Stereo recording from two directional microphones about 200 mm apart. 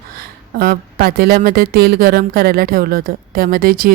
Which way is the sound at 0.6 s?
50° right (ahead or behind).